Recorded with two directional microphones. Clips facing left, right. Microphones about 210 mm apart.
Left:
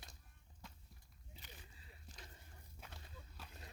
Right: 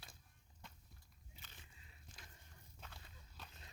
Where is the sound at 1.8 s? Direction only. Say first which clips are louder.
Left 4 dB; 35° left (ahead or behind).